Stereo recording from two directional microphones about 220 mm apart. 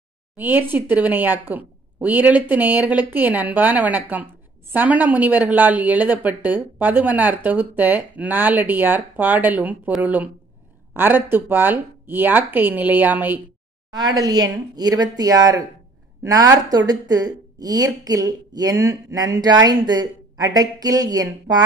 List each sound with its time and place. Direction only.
0.4 s a woman's voice: 10° right (ahead or behind)
13.8 s a woman's voice: 20° right (ahead or behind)